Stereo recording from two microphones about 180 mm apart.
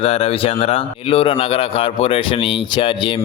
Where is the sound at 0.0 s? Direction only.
35° left (ahead or behind).